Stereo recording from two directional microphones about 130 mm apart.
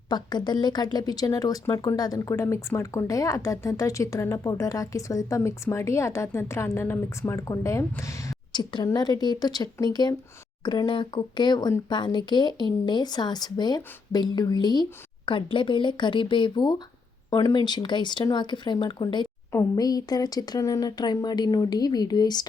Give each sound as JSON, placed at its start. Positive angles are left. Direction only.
{"t": 0.1, "sound": "speech", "side_deg": 35}
{"t": 19.5, "sound": "speech", "side_deg": 25}